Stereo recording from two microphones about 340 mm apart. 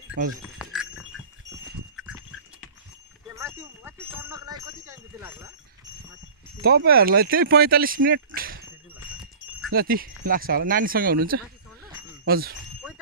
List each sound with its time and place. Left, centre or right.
0.1 s speech: right
0.6 s dog: centre
2.0 s duck: centre
3.3 s a sound: centre
6.6 s speech: right
9.7 s speech: right